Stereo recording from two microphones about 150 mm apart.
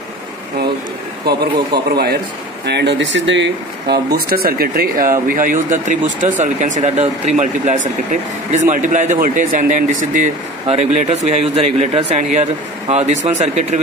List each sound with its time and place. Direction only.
1.2 s speech: 90° right
3.9 s speech: 90° right; by 10.3 s 60° right (ahead or behind)
10.7 s speech: 45° right (ahead or behind)